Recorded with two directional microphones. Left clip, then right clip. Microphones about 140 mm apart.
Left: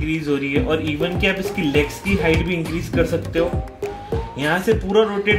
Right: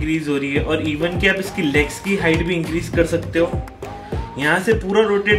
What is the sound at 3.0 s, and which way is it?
Speech, 45° left (ahead or behind).